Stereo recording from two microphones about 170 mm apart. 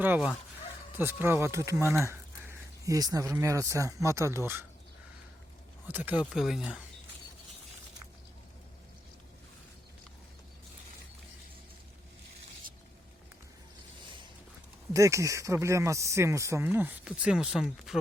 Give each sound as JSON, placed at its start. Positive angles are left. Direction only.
{"t": 0.0, "sound": "speech", "side_deg": -10}
{"t": 5.9, "sound": "speech", "side_deg": -10}
{"t": 14.9, "sound": "speech", "side_deg": -20}